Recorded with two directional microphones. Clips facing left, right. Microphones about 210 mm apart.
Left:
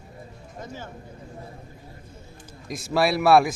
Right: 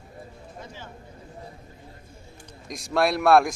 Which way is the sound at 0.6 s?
45° left (ahead or behind).